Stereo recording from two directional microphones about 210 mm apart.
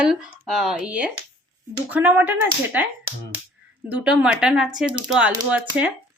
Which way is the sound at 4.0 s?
5° right (ahead or behind).